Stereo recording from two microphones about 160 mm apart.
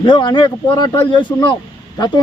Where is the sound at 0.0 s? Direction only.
30° left (ahead or behind).